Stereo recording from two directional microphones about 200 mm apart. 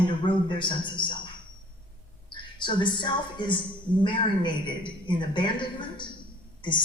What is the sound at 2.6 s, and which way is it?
A woman's voice, 25° left (ahead or behind).